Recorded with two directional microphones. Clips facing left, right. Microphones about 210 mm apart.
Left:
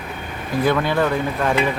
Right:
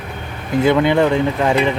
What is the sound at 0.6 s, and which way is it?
Speech, 20° right (ahead or behind).